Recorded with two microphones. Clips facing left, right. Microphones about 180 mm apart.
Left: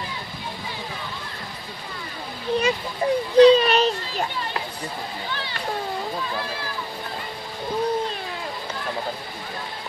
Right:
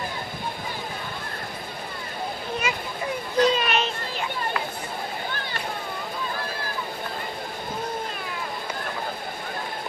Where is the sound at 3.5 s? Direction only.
35° left (ahead or behind).